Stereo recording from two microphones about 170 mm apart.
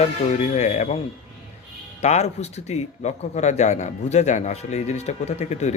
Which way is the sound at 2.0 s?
40° left (ahead or behind).